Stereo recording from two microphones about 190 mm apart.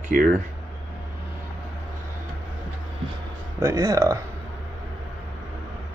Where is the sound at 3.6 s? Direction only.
15° right (ahead or behind).